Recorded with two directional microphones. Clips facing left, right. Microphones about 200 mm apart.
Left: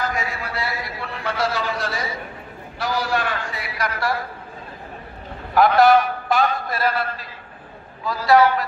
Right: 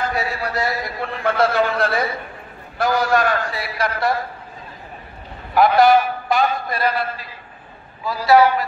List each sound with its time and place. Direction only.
0.0 s a man's voice: 35° right (ahead or behind)
5.5 s a man's voice: centre (ahead or behind)
8.3 s a man's voice: 5° right (ahead or behind)